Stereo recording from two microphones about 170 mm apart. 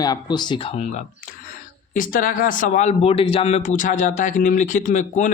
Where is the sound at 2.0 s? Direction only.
55° left (ahead or behind).